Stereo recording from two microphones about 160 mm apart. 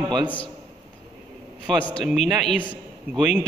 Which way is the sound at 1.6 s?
5° left (ahead or behind).